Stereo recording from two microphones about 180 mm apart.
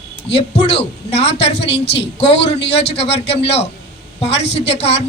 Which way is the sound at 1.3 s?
35° left (ahead or behind).